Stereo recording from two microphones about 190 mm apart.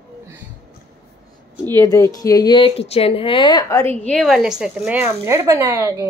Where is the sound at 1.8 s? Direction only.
15° left (ahead or behind).